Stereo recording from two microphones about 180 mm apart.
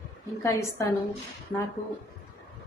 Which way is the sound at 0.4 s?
20° left (ahead or behind).